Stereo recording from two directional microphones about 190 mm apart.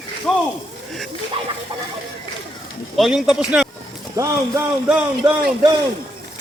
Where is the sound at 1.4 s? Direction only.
30° right (ahead or behind).